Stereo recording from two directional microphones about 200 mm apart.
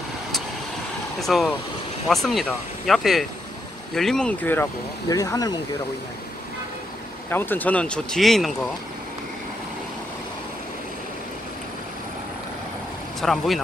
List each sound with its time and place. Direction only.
1.2 s speech: centre (ahead or behind); by 5.6 s 20° left (ahead or behind)
7.2 s speech: 10° left (ahead or behind)
13.2 s speech: centre (ahead or behind)